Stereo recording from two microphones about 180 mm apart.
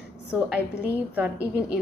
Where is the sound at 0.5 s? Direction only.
5° right (ahead or behind).